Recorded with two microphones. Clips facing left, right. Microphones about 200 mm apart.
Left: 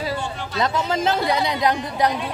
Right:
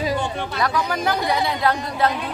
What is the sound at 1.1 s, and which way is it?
Speech, 20° right (ahead or behind).